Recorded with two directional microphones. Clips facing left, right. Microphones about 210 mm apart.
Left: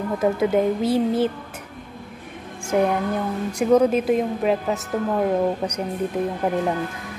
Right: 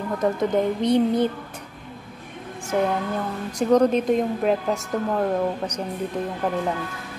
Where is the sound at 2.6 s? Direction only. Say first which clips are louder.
Left 3 dB; 10° left (ahead or behind).